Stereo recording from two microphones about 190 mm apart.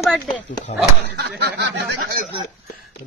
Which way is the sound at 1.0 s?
60° right (ahead or behind).